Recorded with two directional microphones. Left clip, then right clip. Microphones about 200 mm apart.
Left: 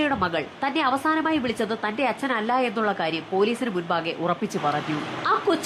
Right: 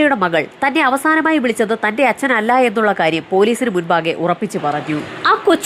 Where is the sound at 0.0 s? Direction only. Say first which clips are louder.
Right 10 dB; 20° right (ahead or behind).